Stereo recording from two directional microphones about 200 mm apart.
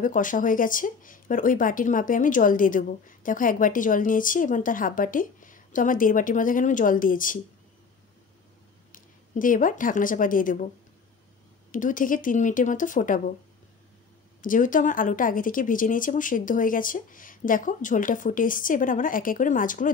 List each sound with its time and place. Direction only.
0.0 s speech: 40° left (ahead or behind)
8.9 s speech: 40° left (ahead or behind)
11.7 s speech: 40° left (ahead or behind)
14.4 s speech: 40° left (ahead or behind)